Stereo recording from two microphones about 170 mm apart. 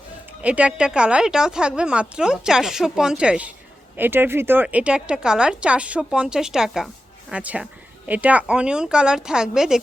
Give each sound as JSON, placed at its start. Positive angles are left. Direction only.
{"t": 0.4, "sound": "speech", "side_deg": -10}